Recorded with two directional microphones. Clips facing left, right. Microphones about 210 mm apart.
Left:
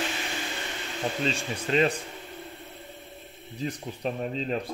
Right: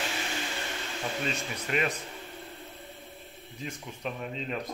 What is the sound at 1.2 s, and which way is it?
Speech, 30° left (ahead or behind).